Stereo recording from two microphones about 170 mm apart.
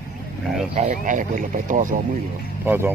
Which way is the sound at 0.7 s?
45° right (ahead or behind).